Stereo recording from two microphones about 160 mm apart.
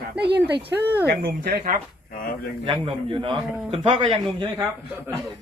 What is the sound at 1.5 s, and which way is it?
Speech, 55° right (ahead or behind).